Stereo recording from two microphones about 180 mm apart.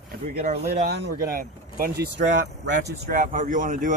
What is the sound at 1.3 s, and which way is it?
Speech, 55° right (ahead or behind).